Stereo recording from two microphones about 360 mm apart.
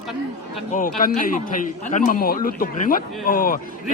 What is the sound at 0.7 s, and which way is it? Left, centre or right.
A man's voice, left.